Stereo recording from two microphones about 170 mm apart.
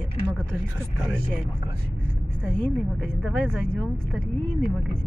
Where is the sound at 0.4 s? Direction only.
5° left (ahead or behind).